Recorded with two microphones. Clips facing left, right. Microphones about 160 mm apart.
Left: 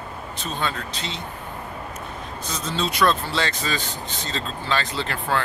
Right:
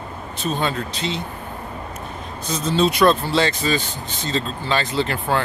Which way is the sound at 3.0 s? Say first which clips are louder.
Right 2 dB; 20° right (ahead or behind).